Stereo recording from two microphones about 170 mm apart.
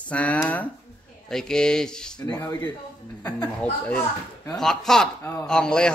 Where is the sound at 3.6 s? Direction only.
10° left (ahead or behind).